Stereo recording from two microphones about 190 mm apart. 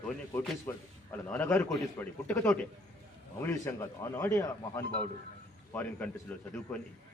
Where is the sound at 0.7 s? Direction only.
10° left (ahead or behind).